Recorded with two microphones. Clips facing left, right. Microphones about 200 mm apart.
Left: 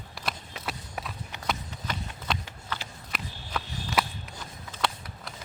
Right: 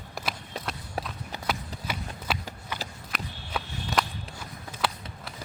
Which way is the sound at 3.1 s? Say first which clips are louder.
Right 1 dB; 5° left (ahead or behind).